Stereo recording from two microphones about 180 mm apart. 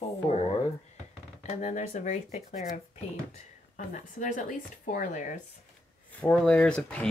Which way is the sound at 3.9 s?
45° left (ahead or behind).